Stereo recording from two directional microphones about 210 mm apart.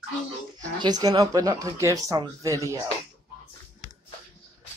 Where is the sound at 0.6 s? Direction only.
20° right (ahead or behind).